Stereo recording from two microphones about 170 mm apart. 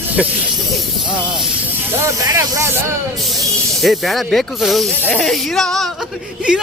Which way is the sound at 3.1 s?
Centre (ahead or behind).